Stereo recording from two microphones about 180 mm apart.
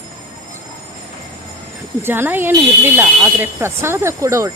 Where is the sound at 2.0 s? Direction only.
10° right (ahead or behind).